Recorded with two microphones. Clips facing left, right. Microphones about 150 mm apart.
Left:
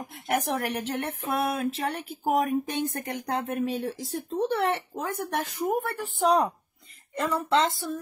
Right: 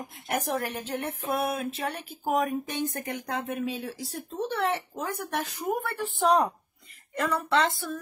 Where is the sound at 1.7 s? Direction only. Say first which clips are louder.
Left 2 dB; 35° left (ahead or behind).